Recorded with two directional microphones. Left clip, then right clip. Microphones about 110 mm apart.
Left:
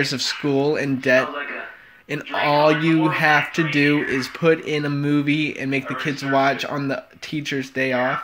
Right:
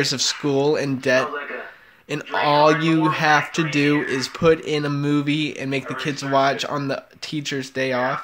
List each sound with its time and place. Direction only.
0.0 s speech: 30° right (ahead or behind)